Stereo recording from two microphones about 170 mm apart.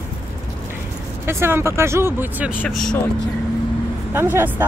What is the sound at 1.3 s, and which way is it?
Speech, 15° right (ahead or behind).